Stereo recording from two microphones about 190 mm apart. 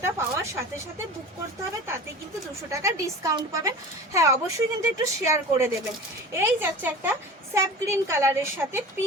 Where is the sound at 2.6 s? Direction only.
15° right (ahead or behind).